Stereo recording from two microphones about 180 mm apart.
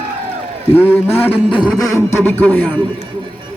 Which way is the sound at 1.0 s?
30° left (ahead or behind).